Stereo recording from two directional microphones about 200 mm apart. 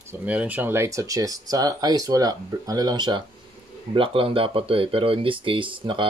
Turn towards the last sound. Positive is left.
turn(degrees=-25)  # may be behind; listen again after turning